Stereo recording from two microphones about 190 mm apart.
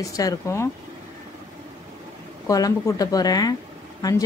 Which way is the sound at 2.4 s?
20° left (ahead or behind).